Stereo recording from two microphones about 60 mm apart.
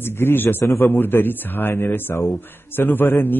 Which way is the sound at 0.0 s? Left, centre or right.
Left.